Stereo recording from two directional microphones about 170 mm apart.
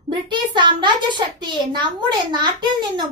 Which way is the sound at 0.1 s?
25° right (ahead or behind).